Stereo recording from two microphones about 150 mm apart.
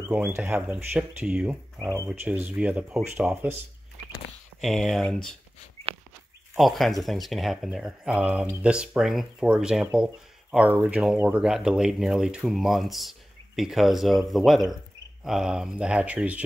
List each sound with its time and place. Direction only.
0.1 s speech: 10° right (ahead or behind)
1.8 s speech: 20° right (ahead or behind)
2.0 s speech: 10° right (ahead or behind)
4.6 s speech: centre (ahead or behind)
6.5 s speech: centre (ahead or behind)